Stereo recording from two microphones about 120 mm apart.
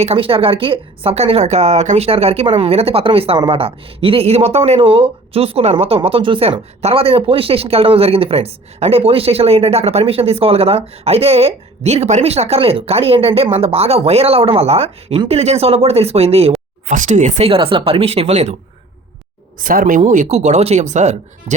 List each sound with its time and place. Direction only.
0.0 s speech: 55° right (ahead or behind); by 2.0 s 75° right (ahead or behind)
2.0 s speech: 60° right (ahead or behind)
16.8 s speech: 90° right; by 18.5 s 65° right (ahead or behind)
20.1 s speech: 75° right (ahead or behind)